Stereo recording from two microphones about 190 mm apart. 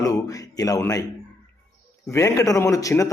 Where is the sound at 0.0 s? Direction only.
20° left (ahead or behind).